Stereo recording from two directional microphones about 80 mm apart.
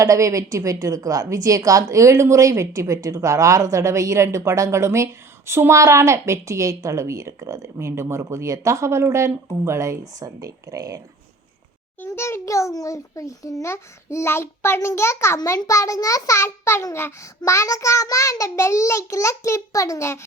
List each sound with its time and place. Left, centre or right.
0.0 s a woman's voice: right
12.0 s a child's voice: left